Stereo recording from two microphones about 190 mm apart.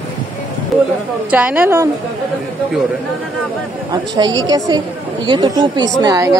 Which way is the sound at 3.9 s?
20° right (ahead or behind).